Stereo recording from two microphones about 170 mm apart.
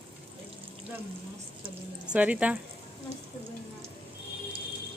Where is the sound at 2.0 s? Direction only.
5° right (ahead or behind).